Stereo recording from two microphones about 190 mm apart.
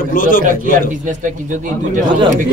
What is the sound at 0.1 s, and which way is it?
Speech, 45° left (ahead or behind).